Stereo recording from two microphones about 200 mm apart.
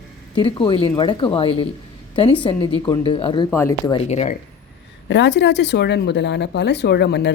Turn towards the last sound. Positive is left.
turn(degrees=55)  # may be behind; listen again after turning